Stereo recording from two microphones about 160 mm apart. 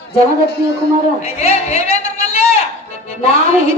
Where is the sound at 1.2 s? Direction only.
40° left (ahead or behind).